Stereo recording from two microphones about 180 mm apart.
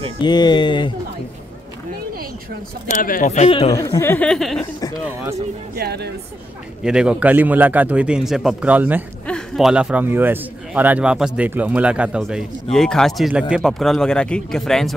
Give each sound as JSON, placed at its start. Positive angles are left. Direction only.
{"t": 0.2, "sound": "speech", "side_deg": 25}
{"t": 2.9, "sound": "a man's voice", "side_deg": 50}
{"t": 3.7, "sound": "speech", "side_deg": 15}
{"t": 5.8, "sound": "speech", "side_deg": -65}
{"t": 6.8, "sound": "a man's voice", "side_deg": -5}